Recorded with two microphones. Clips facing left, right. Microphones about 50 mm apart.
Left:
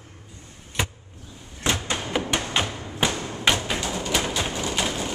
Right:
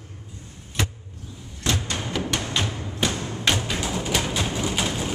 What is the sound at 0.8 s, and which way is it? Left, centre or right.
Vehicle, centre.